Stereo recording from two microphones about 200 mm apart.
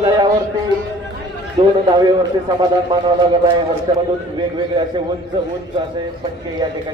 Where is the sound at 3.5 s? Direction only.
20° right (ahead or behind).